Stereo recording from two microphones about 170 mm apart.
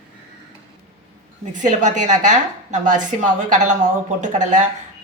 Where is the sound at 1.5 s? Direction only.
50° right (ahead or behind).